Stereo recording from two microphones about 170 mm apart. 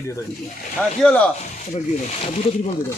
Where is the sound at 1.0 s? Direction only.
5° left (ahead or behind).